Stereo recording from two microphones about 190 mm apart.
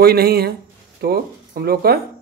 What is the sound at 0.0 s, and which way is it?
Speech, 55° right (ahead or behind).